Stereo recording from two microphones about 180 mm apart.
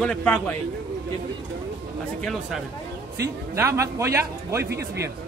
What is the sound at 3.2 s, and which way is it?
A man's voice, 15° right (ahead or behind).